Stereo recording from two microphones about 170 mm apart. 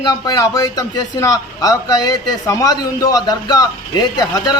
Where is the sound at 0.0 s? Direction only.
20° left (ahead or behind).